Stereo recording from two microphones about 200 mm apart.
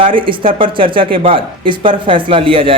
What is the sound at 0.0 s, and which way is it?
Speech, 25° right (ahead or behind).